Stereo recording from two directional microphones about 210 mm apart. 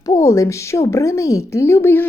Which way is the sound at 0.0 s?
15° left (ahead or behind).